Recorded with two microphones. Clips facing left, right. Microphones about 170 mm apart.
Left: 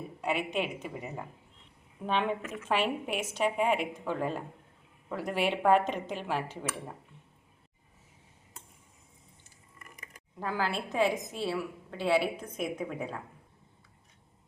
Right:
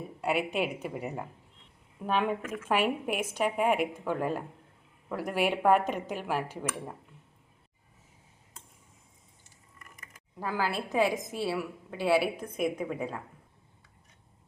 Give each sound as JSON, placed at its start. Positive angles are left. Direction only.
{"t": 0.2, "sound": "a woman's voice", "side_deg": -5}
{"t": 10.4, "sound": "a woman's voice", "side_deg": -5}